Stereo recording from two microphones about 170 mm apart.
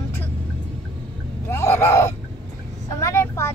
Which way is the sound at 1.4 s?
15° left (ahead or behind).